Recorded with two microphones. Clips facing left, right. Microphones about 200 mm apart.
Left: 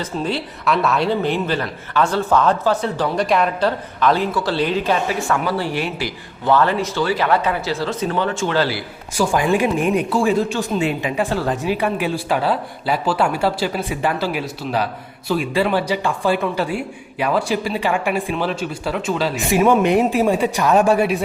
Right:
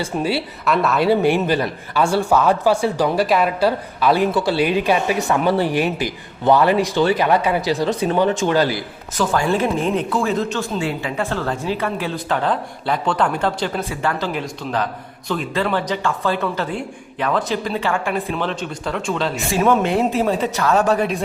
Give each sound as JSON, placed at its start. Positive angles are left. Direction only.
{"t": 0.0, "sound": "a woman's voice", "side_deg": -10}
{"t": 9.1, "sound": "a woman's voice", "side_deg": 10}
{"t": 19.5, "sound": "a woman's voice", "side_deg": 15}